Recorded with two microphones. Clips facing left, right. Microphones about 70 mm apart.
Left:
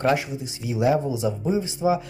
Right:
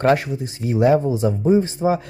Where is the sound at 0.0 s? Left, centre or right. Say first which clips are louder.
Right 5 dB; right.